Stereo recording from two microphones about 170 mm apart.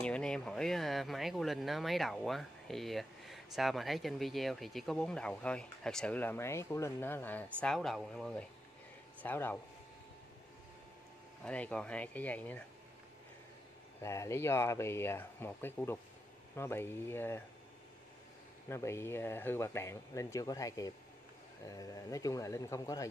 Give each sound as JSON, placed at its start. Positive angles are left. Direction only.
{"t": 0.0, "sound": "speech", "side_deg": 5}
{"t": 11.4, "sound": "speech", "side_deg": 5}
{"t": 14.0, "sound": "speech", "side_deg": 15}
{"t": 18.7, "sound": "speech", "side_deg": 15}